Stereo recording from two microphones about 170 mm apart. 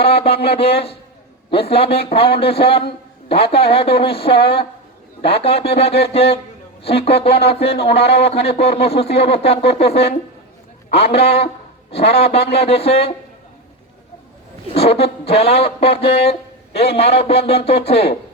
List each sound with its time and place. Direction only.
0.0 s a sound: 35° left (ahead or behind)
0.4 s speech: 35° left (ahead or behind)
14.7 s speech: 35° left (ahead or behind)